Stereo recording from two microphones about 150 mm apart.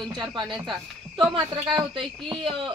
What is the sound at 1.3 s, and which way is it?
A woman's voice, 35° right (ahead or behind).